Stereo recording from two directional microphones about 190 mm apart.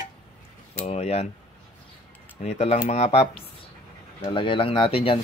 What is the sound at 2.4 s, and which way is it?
Speech, 35° left (ahead or behind).